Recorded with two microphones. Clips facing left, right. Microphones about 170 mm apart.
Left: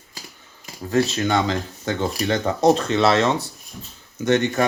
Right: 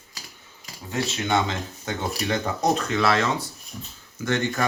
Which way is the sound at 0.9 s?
35° left (ahead or behind).